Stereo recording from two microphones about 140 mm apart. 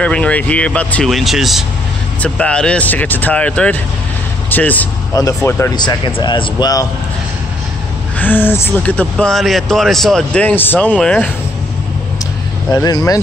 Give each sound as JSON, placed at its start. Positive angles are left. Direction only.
{"t": 0.0, "sound": "speech", "side_deg": 10}
{"t": 5.8, "sound": "speech", "side_deg": 35}
{"t": 8.2, "sound": "speech", "side_deg": 15}
{"t": 12.7, "sound": "speech", "side_deg": 25}